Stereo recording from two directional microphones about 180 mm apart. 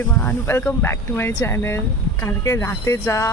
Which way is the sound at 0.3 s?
10° left (ahead or behind).